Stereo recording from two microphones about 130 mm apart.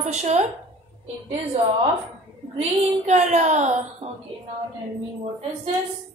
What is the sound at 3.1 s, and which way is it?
Speech, 65° right (ahead or behind).